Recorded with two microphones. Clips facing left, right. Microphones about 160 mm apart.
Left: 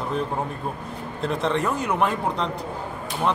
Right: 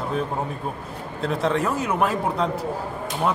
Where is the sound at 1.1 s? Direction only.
Centre (ahead or behind).